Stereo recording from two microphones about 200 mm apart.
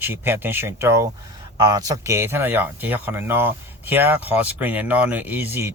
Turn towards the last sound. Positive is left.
turn(degrees=-10)  # may be behind; listen again after turning